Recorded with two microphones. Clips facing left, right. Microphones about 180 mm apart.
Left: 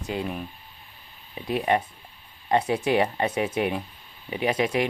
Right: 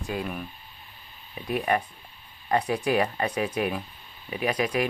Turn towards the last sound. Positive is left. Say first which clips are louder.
# left 2 dB
turn(degrees=25)  # may be behind; listen again after turning